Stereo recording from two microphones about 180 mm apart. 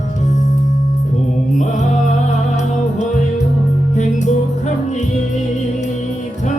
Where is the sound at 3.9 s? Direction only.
40° left (ahead or behind).